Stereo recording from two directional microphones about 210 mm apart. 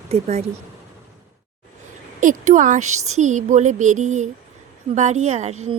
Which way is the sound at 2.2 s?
40° right (ahead or behind).